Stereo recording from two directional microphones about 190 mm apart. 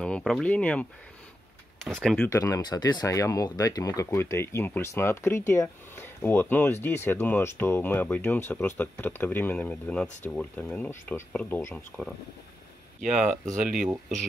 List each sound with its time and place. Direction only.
0.0 s speech: centre (ahead or behind)
1.9 s speech: centre (ahead or behind)
2.2 s speech: 15° left (ahead or behind)
13.2 s speech: centre (ahead or behind)